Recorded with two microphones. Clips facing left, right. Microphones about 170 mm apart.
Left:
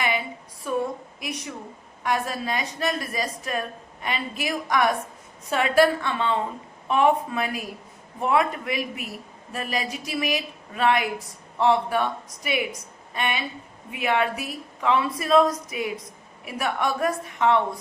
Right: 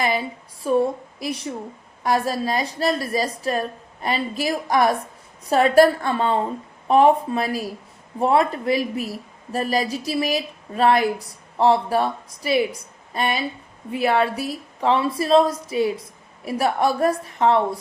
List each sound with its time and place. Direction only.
0.6 s a woman's voice: 35° right (ahead or behind)